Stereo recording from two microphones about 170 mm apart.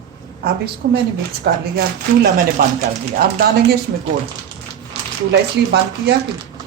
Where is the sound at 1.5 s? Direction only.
70° right (ahead or behind).